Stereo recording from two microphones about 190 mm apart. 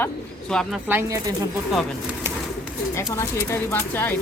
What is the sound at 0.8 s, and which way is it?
Speech, 15° right (ahead or behind).